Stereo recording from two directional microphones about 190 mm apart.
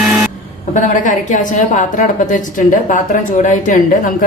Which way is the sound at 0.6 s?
40° left (ahead or behind).